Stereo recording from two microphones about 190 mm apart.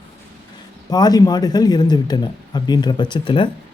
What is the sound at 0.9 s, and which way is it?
Speech, 20° left (ahead or behind).